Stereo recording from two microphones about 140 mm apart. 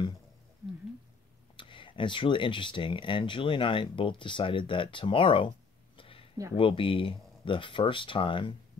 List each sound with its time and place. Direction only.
1.6 s speech: 35° left (ahead or behind)
5.9 s a sound: 40° left (ahead or behind)
6.5 s speech: 40° left (ahead or behind)